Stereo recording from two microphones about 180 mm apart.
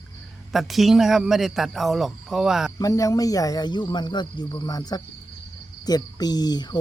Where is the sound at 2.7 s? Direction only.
20° left (ahead or behind).